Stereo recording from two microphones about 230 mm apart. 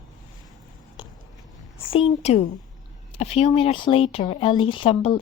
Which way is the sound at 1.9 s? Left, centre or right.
Left.